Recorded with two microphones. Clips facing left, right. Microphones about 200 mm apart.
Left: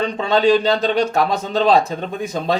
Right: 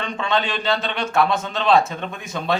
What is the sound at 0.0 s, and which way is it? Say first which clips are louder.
A man's voice: left 7 dB; 40° left (ahead or behind).